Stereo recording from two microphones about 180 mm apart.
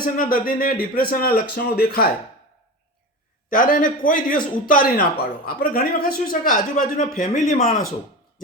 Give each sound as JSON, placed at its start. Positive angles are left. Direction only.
{"t": 0.0, "sound": "a man's voice", "side_deg": 50}
{"t": 3.5, "sound": "a man's voice", "side_deg": 50}